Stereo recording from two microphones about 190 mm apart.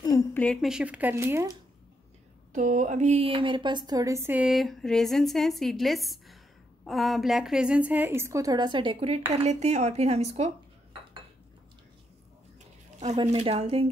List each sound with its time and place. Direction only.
0.0 s a sound: 20° left (ahead or behind)
0.4 s a woman's voice: centre (ahead or behind)
2.5 s a woman's voice: 40° right (ahead or behind)
13.2 s speech: 30° right (ahead or behind)